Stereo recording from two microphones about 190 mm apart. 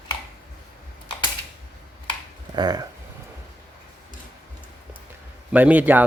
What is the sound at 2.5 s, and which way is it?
Speech, 20° right (ahead or behind).